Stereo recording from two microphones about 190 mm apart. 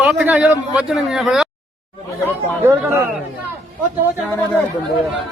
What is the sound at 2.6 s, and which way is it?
Speech, 15° right (ahead or behind).